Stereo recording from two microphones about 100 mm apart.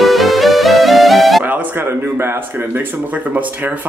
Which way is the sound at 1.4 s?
20° right (ahead or behind).